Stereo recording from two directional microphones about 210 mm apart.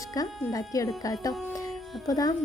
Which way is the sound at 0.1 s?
15° left (ahead or behind).